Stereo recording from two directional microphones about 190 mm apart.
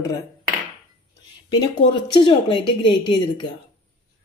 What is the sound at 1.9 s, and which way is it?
A woman's voice, 25° left (ahead or behind).